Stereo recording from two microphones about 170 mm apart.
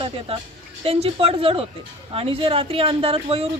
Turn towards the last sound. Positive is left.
turn(degrees=-35)  # may be behind; listen again after turning